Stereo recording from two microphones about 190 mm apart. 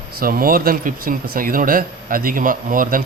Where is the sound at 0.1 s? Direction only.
50° right (ahead or behind).